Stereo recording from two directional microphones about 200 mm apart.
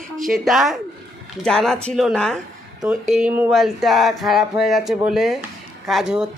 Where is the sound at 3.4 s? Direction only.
Centre (ahead or behind).